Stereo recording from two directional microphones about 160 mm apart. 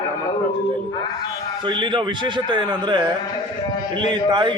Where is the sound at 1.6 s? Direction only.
30° right (ahead or behind).